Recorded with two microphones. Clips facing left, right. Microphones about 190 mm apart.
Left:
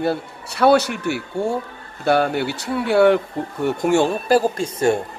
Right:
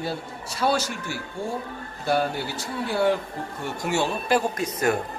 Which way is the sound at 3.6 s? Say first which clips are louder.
Left 8 dB; 55° left (ahead or behind).